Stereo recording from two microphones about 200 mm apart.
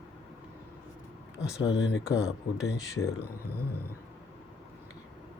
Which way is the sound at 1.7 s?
60° left (ahead or behind).